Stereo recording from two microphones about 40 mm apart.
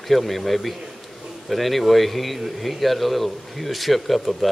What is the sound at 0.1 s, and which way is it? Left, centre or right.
A man's voice, centre.